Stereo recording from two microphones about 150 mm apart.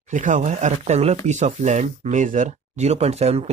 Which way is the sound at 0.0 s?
55° right (ahead or behind).